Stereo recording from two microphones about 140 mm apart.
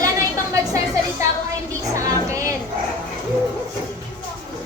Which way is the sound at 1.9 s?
25° right (ahead or behind).